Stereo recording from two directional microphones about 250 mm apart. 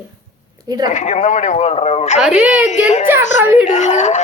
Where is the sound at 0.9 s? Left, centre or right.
Left.